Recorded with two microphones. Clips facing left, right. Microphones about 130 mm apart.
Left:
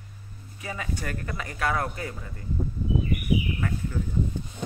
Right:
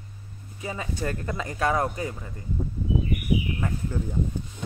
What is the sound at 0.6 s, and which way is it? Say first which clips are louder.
Speech: right 2 dB; 25° right (ahead or behind).